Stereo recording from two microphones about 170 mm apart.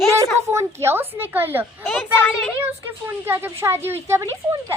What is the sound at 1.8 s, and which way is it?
Speech, 10° left (ahead or behind).